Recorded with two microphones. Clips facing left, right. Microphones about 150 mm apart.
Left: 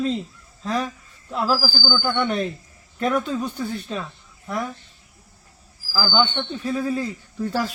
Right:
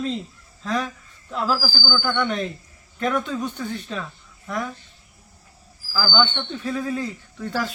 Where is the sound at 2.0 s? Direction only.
30° left (ahead or behind).